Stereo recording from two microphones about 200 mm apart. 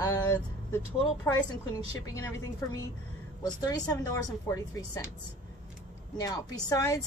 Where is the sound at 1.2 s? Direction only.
15° left (ahead or behind).